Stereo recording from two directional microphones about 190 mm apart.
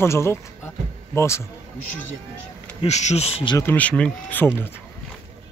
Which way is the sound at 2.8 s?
35° left (ahead or behind).